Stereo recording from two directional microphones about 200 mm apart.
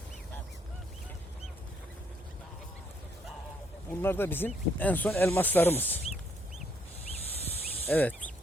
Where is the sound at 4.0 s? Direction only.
10° left (ahead or behind).